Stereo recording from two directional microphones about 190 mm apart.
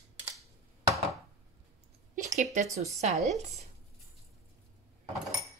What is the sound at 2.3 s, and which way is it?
Speech, 35° right (ahead or behind).